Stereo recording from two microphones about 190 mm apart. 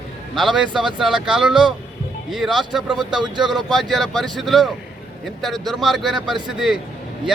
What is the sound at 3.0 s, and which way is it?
Speech, 25° right (ahead or behind).